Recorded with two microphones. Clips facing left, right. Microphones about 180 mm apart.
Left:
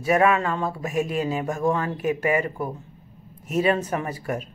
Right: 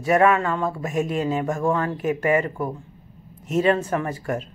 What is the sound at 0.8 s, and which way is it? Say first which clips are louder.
Speech: left 1 dB; 35° right (ahead or behind).